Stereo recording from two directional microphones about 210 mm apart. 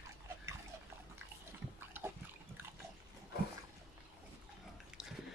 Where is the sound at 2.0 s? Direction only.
10° right (ahead or behind).